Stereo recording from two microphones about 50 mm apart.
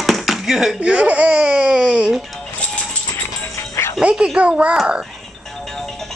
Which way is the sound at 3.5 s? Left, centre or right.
Left.